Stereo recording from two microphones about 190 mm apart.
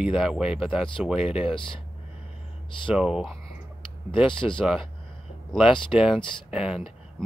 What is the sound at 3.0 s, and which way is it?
Speech, 5° right (ahead or behind).